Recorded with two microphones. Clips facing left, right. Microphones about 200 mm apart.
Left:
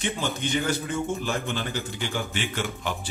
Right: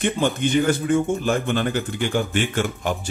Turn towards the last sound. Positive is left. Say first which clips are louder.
# right 6 dB
turn(degrees=-50)  # may be behind; listen again after turning